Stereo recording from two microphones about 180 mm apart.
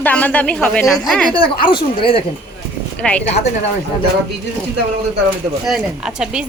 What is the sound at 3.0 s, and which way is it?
Speech, 5° left (ahead or behind).